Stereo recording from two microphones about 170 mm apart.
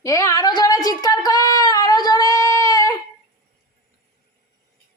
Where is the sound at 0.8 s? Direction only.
20° left (ahead or behind).